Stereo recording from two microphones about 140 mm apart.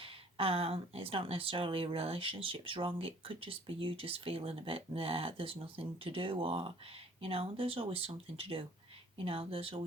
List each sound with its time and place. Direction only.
0.0 s speech: 40° right (ahead or behind)